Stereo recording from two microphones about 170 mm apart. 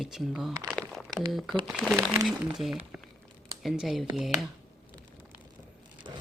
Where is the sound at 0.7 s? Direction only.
5° left (ahead or behind).